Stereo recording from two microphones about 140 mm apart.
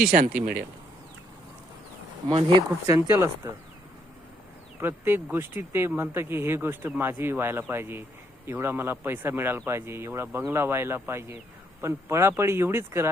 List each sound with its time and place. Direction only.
0.1 s speech: 80° right
2.3 s speech: 35° right (ahead or behind)
2.8 s speech: 20° right (ahead or behind)
4.8 s speech: 15° right (ahead or behind)